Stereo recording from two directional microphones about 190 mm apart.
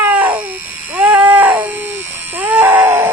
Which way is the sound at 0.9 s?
10° right (ahead or behind).